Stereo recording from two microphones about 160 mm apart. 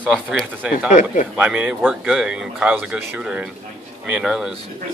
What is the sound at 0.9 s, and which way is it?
Speech, 55° left (ahead or behind).